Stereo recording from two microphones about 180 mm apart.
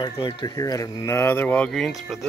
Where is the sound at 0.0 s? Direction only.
25° left (ahead or behind).